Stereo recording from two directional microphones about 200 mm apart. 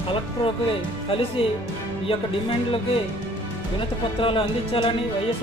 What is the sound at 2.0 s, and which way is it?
Speech, 25° left (ahead or behind).